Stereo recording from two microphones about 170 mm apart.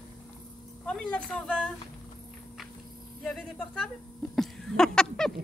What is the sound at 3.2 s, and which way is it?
Speech, centre (ahead or behind).